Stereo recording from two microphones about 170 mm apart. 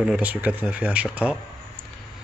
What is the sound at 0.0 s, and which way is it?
Speech, 5° right (ahead or behind).